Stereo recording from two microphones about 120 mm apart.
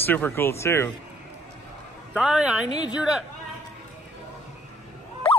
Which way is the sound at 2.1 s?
5° right (ahead or behind).